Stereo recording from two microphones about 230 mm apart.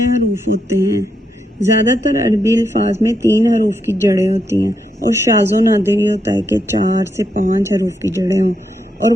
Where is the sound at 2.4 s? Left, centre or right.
Centre.